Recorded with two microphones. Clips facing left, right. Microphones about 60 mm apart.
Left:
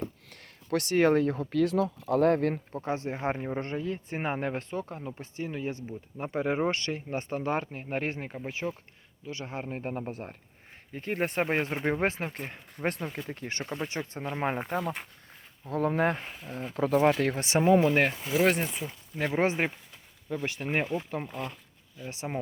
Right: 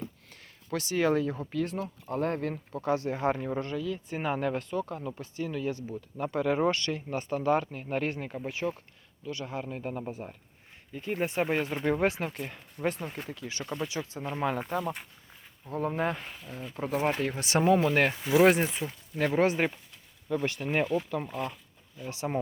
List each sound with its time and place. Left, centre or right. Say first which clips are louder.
0.0 s speech: left 4 dB; left
2.8 s a man's voice: right 3 dB; left
10.1 s speech: even; left
11.4 s a man's voice: even; left
14.3 s a man's voice: even; left
15.7 s speech: left 3 dB; left
16.4 s a man's voice: left 3 dB; left
16.7 s speech: left 5 dB; left
17.7 s speech: left 2 dB; left
18.4 s speech: right 2 dB; centre
19.1 s speech: right 2 dB; centre
21.2 s speech: right 2 dB; centre
22.0 s speech: right 3 dB; left